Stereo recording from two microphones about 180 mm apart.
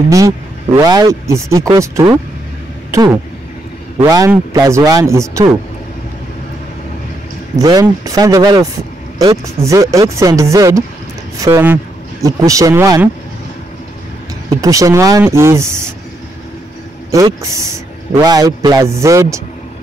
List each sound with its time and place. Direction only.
0.7 s a man's voice: 20° right (ahead or behind)
7.5 s a man's voice: 20° right (ahead or behind)
14.5 s a man's voice: 20° right (ahead or behind)
17.1 s a man's voice: 15° right (ahead or behind)